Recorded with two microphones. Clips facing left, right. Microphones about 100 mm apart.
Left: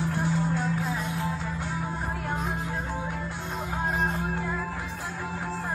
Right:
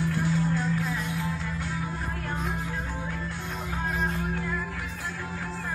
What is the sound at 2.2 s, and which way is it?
Music, 15° left (ahead or behind).